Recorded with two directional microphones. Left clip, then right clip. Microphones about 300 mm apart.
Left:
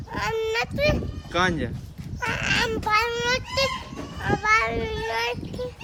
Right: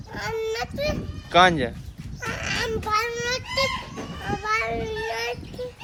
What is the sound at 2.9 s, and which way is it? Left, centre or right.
A man's voice, centre.